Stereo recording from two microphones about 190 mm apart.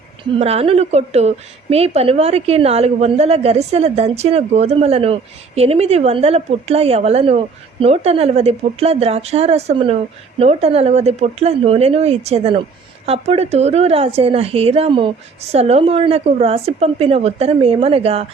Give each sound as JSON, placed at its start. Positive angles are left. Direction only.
{"t": 0.3, "sound": "a woman's voice", "side_deg": -30}